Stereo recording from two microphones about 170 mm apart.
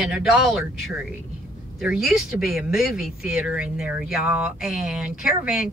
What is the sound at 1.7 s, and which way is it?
Speech, centre (ahead or behind).